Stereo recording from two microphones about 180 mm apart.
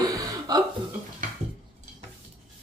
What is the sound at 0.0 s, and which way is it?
Chuckle, 20° right (ahead or behind).